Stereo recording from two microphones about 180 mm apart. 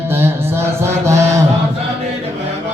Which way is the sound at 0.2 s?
15° right (ahead or behind).